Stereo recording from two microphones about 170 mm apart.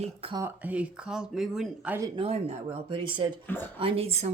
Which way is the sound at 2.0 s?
25° right (ahead or behind).